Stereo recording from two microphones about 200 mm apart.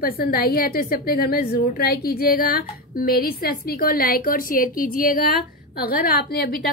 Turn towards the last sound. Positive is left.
turn(degrees=50)  # may be behind; listen again after turning